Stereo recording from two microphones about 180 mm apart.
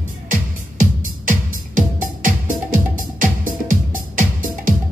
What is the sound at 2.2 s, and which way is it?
Music, 50° right (ahead or behind).